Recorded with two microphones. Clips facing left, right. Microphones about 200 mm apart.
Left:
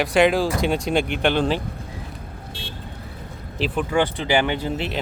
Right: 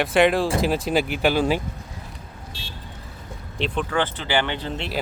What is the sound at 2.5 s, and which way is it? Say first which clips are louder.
Vehicle: left 4 dB; 55° left (ahead or behind).